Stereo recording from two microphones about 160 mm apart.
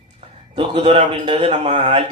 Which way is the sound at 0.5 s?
35° right (ahead or behind).